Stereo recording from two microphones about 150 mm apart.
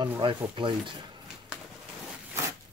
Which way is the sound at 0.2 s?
35° right (ahead or behind).